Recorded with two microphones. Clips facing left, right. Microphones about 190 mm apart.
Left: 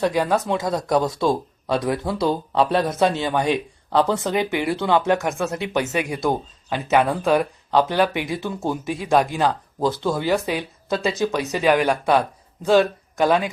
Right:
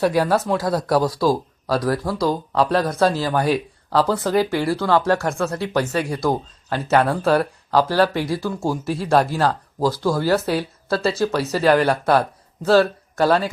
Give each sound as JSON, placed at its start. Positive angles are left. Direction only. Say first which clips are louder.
{"t": 0.0, "sound": "speech", "louder": "right 2 dB", "side_deg": -5}
{"t": 4.4, "sound": "speech", "louder": "right 1 dB", "side_deg": 20}
{"t": 8.8, "sound": "speech", "louder": "right 1 dB", "side_deg": 0}
{"t": 9.3, "sound": "speech", "louder": "right 1 dB", "side_deg": 15}